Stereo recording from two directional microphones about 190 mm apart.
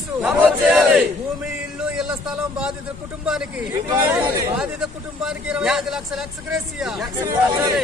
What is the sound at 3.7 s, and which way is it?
A man's voice, 15° right (ahead or behind).